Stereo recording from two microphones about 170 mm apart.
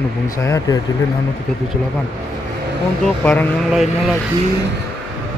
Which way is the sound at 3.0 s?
10° left (ahead or behind).